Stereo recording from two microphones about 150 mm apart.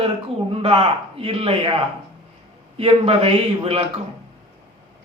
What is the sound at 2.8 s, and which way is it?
A man's voice, 40° right (ahead or behind).